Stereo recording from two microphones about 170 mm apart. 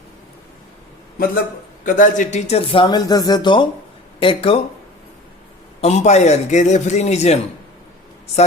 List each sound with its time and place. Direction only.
1.8 s a man's voice: 50° left (ahead or behind); by 4.6 s 35° left (ahead or behind)
5.8 s a man's voice: 40° left (ahead or behind)